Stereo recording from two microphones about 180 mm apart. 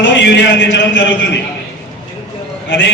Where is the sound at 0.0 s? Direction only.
75° left (ahead or behind).